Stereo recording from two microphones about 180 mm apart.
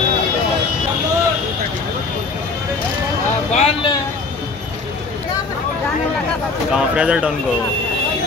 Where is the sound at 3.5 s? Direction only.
35° left (ahead or behind).